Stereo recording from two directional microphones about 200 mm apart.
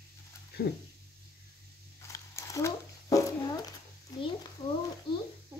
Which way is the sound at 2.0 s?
15° left (ahead or behind).